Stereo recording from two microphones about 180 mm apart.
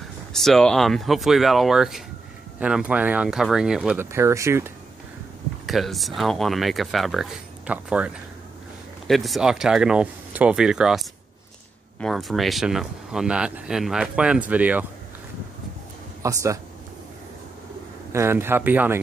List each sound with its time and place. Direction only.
0.3 s speech: centre (ahead or behind); by 4.7 s 15° right (ahead or behind)
5.7 s speech: centre (ahead or behind)
16.2 s speech: 15° right (ahead or behind)
18.1 s speech: 15° right (ahead or behind)